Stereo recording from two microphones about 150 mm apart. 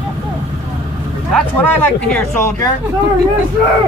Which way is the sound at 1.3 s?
10° left (ahead or behind).